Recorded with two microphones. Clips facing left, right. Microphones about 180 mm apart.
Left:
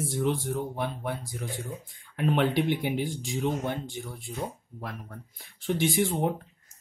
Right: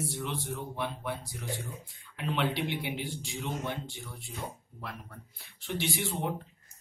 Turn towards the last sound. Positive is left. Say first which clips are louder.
# left 7 dB
turn(degrees=45)  # may be behind; listen again after turning